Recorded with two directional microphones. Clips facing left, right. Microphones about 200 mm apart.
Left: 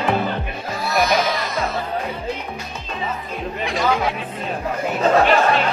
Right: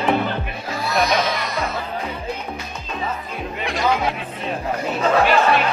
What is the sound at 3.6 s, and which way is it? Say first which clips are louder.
Music: even; centre (ahead or behind).